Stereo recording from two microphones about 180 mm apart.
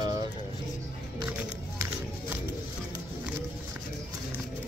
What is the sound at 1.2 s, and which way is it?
Music, 15° right (ahead or behind).